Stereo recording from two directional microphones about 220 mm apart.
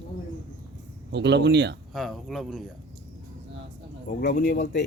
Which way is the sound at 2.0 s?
Centre (ahead or behind).